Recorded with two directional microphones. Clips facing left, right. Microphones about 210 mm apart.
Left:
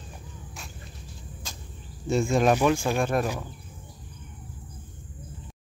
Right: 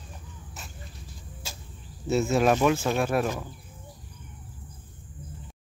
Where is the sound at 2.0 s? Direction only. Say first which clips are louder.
Even; 5° right (ahead or behind).